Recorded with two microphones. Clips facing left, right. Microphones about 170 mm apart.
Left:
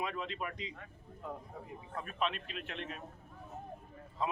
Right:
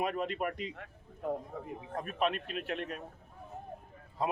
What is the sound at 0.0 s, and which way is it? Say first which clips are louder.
A man's voice: right 6 dB; 50° right (ahead or behind).